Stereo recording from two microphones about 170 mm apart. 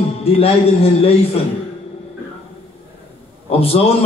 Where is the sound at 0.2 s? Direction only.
35° left (ahead or behind).